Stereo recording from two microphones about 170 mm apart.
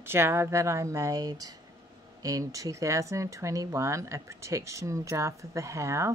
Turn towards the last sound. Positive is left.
turn(degrees=-15)  # may be behind; listen again after turning